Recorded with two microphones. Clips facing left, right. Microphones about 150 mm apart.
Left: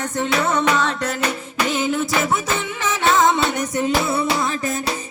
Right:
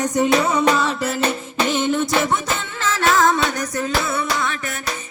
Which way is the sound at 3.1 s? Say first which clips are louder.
Left 1 dB; 20° left (ahead or behind).